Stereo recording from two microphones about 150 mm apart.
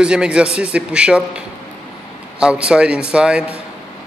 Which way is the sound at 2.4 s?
5° right (ahead or behind).